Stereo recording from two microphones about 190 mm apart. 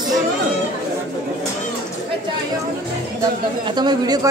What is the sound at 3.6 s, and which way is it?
Speech, 20° right (ahead or behind).